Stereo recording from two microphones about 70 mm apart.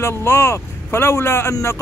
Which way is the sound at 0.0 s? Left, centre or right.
Left.